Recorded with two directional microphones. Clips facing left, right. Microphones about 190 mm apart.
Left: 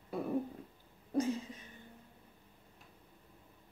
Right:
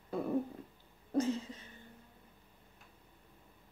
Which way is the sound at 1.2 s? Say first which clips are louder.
Right 1 dB; 15° left (ahead or behind).